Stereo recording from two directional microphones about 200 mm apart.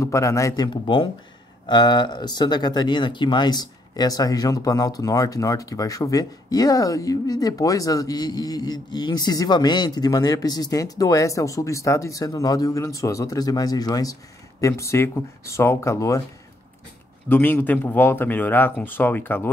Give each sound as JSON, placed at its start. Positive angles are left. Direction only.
{"t": 0.0, "sound": "speech", "side_deg": 15}
{"t": 17.3, "sound": "speech", "side_deg": 10}